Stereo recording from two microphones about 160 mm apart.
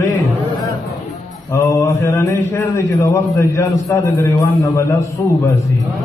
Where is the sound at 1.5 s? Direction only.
20° left (ahead or behind).